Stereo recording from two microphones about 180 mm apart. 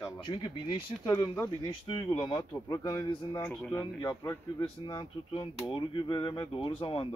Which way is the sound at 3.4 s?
5° left (ahead or behind).